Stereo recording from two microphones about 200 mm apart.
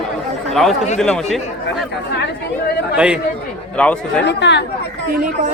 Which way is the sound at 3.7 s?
5° left (ahead or behind).